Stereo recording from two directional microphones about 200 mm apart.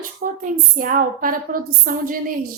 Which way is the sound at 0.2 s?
45° right (ahead or behind).